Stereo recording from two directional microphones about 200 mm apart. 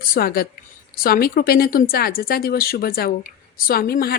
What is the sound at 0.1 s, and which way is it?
Speech, 50° left (ahead or behind).